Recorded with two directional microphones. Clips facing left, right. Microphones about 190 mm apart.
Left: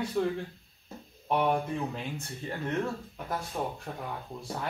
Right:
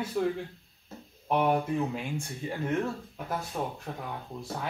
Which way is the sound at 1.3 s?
5° right (ahead or behind).